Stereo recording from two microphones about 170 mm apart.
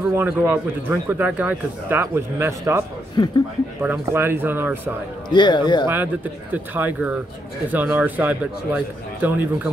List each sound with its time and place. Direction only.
0.1 s a man's voice: 15° right (ahead or behind)
3.2 s a man's voice: 25° left (ahead or behind)
3.8 s a man's voice: 10° right (ahead or behind)
5.3 s a man's voice: 25° left (ahead or behind)
6.5 s a man's voice: 10° right (ahead or behind)